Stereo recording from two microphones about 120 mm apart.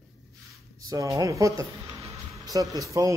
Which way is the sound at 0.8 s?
30° right (ahead or behind).